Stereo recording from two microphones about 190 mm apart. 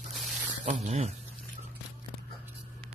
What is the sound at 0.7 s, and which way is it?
Speech, 40° right (ahead or behind).